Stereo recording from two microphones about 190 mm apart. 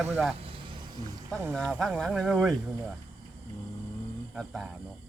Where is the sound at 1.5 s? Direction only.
5° left (ahead or behind).